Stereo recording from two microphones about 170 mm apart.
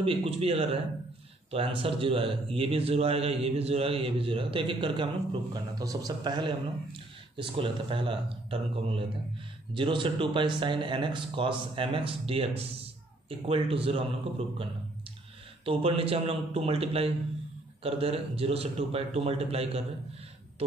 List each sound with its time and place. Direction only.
0.0 s a man's voice: 35° right (ahead or behind)
15.6 s a man's voice: 35° right (ahead or behind)